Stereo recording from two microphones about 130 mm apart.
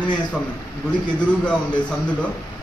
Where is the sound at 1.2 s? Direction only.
10° left (ahead or behind).